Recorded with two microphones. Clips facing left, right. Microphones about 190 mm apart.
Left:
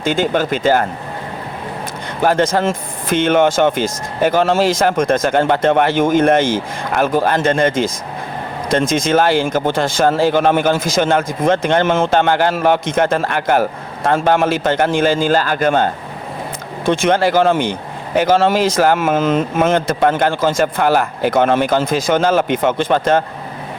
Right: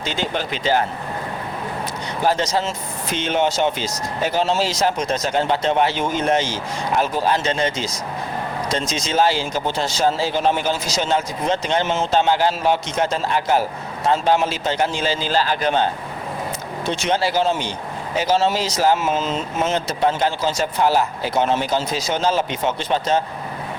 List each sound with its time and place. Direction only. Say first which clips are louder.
0.0 s speech: left 8 dB; 50° left (ahead or behind)
2.2 s a man's voice: left 6 dB; 55° left (ahead or behind)